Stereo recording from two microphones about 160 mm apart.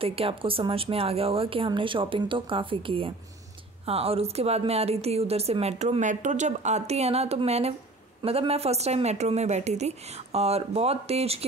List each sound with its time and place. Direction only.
0.0 s a woman's voice: 35° right (ahead or behind)